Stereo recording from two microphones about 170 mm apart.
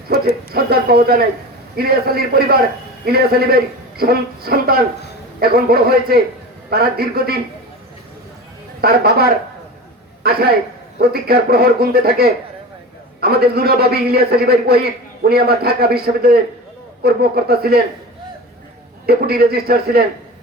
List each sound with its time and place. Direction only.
0.5 s a man's voice: 65° right (ahead or behind)
8.8 s a man's voice: 65° right (ahead or behind)
19.0 s a man's voice: 65° right (ahead or behind)